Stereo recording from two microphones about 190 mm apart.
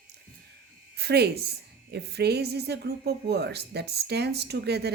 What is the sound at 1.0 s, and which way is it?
A woman's voice, 60° right (ahead or behind).